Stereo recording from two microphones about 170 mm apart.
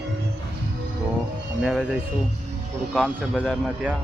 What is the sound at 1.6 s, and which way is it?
Speech, centre (ahead or behind).